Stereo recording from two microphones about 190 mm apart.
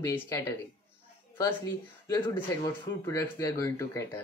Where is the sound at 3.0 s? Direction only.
15° left (ahead or behind).